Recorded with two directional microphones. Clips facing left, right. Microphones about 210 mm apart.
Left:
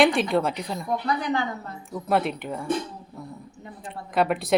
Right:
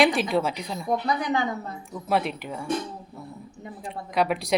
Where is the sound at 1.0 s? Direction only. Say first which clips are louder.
Even; 20° right (ahead or behind).